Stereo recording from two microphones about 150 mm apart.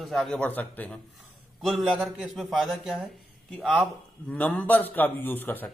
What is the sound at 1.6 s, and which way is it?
A man's voice, centre (ahead or behind).